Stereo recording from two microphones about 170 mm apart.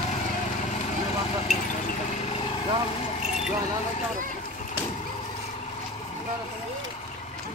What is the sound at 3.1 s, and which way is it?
Keys jangling, 40° left (ahead or behind).